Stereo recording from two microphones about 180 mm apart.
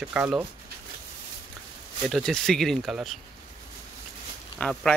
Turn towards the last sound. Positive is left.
turn(degrees=5)  # may be behind; listen again after turning